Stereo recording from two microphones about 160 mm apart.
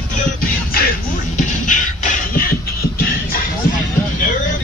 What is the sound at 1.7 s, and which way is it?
Beatboxing, 55° left (ahead or behind).